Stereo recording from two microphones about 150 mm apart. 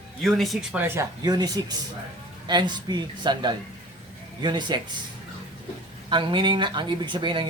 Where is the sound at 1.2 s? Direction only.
25° right (ahead or behind).